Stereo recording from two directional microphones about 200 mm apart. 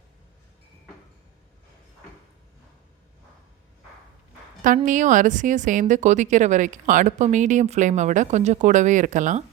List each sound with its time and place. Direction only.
4.9 s speech: 40° right (ahead or behind)